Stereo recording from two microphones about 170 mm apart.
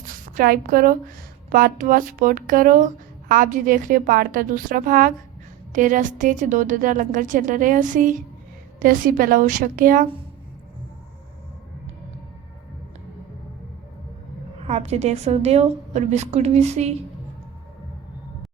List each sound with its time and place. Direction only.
0.3 s a woman's voice: 60° right (ahead or behind)
14.6 s a woman's voice: 40° right (ahead or behind)